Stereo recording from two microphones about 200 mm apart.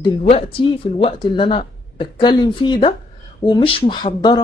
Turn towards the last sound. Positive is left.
turn(degrees=20)  # may be behind; listen again after turning